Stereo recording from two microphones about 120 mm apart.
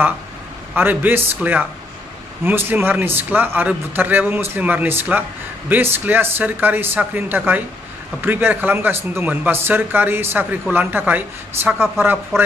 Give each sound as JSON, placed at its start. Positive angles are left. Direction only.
{"t": 0.7, "sound": "speech", "side_deg": -15}